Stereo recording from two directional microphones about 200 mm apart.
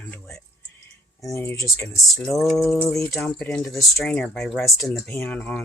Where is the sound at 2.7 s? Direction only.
10° left (ahead or behind).